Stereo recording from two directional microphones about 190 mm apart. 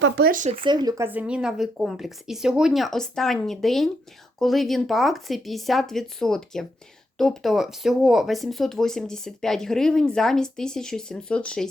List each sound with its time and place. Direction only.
0.3 s speech: 45° right (ahead or behind)
0.5 s speech: 25° right (ahead or behind); by 11.7 s 5° left (ahead or behind)